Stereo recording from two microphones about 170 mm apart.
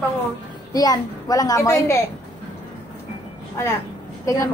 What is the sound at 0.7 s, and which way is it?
A child's voice, 20° left (ahead or behind).